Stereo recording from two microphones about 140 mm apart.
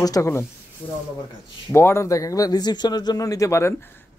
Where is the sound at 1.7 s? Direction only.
20° left (ahead or behind).